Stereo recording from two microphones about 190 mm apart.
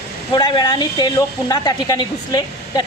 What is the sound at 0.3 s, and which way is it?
A woman's voice, 20° left (ahead or behind).